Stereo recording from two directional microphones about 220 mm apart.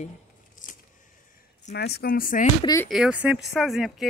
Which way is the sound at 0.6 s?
35° left (ahead or behind).